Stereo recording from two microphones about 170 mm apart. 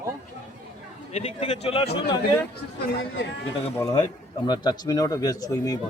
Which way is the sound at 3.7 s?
20° left (ahead or behind).